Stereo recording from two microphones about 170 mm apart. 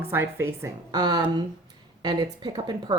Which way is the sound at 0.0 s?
15° right (ahead or behind).